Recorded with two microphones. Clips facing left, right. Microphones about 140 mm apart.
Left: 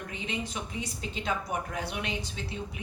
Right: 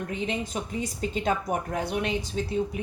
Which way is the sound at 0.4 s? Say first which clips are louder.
Right 5 dB; 45° right (ahead or behind).